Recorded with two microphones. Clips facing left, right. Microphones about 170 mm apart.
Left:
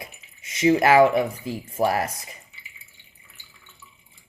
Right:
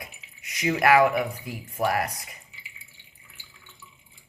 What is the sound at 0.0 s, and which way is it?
Speech, 25° left (ahead or behind).